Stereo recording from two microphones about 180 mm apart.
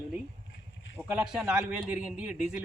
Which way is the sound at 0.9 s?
5° right (ahead or behind).